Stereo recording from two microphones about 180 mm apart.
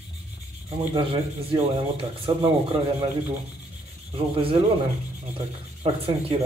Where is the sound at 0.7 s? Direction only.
30° right (ahead or behind).